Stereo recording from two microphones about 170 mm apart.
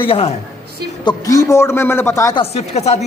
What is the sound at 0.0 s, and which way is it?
Speech, 35° left (ahead or behind).